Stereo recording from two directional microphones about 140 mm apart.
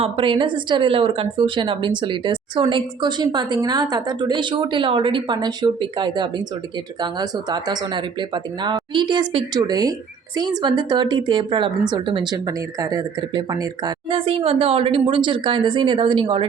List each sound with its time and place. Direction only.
0.0 s a woman's voice: 40° right (ahead or behind)